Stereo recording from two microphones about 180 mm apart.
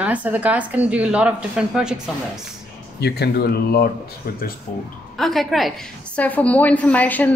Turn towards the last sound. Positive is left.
turn(degrees=10)  # may be behind; listen again after turning